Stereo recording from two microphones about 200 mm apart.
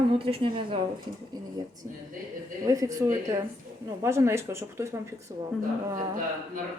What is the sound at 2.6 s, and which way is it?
A woman's voice, 15° right (ahead or behind).